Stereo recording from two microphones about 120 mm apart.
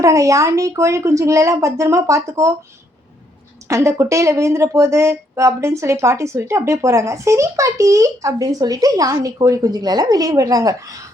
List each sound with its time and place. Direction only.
0.0 s speech: 25° right (ahead or behind)
3.7 s speech: 25° right (ahead or behind)